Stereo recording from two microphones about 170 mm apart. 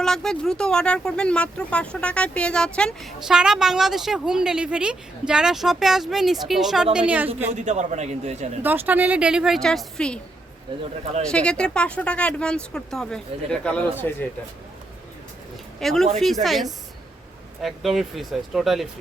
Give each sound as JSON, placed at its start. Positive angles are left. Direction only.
{"t": 0.0, "sound": "a woman's voice", "side_deg": 5}
{"t": 7.6, "sound": "a man's voice", "side_deg": -45}
{"t": 8.6, "sound": "speech", "side_deg": -10}
{"t": 10.7, "sound": "speech", "side_deg": -30}
{"t": 11.3, "sound": "speech", "side_deg": 5}
{"t": 15.8, "sound": "speech", "side_deg": 0}